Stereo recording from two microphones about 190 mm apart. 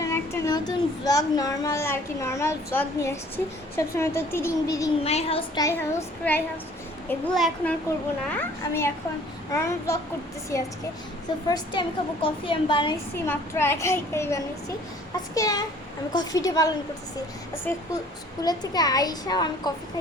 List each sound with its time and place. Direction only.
0.0 s speech: 15° left (ahead or behind)
5.0 s a child's voice: 30° left (ahead or behind)
5.5 s speech: 15° left (ahead or behind)
7.3 s speech: centre (ahead or behind)
8.4 s a woman's voice: 15° left (ahead or behind)
13.2 s a woman's voice: 10° left (ahead or behind)
18.4 s a woman's voice: 20° left (ahead or behind)